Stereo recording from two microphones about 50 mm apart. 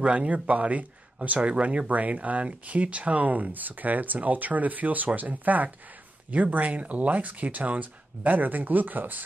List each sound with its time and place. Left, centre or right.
0.0 s speech: right